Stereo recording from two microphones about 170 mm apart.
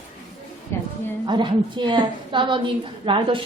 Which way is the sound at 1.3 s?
25° right (ahead or behind).